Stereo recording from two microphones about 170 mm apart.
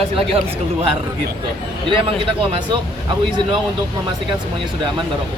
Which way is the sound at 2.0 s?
30° right (ahead or behind).